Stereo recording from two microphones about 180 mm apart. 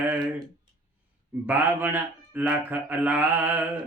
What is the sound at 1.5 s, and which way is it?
A man's voice, 10° right (ahead or behind).